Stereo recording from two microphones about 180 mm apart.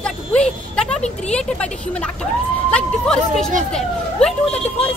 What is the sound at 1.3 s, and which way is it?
A woman's voice, 5° left (ahead or behind).